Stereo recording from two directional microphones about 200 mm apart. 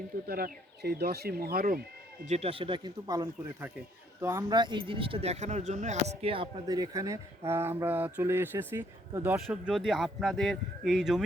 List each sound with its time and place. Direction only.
0.3 s speech: 50° right (ahead or behind)
2.2 s speech: 30° right (ahead or behind); by 11.2 s centre (ahead or behind)